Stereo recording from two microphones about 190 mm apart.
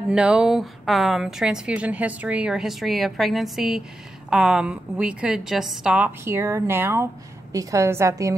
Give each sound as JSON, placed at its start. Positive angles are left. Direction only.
{"t": 0.1, "sound": "a woman's voice", "side_deg": -5}